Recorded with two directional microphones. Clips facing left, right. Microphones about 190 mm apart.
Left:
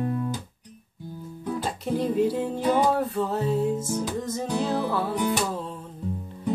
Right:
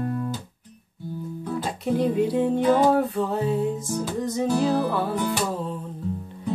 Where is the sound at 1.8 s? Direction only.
Centre (ahead or behind).